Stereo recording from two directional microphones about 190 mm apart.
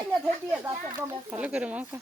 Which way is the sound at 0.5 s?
15° right (ahead or behind).